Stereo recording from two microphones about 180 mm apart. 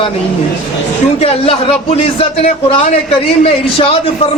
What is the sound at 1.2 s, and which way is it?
A man's voice, 35° left (ahead or behind).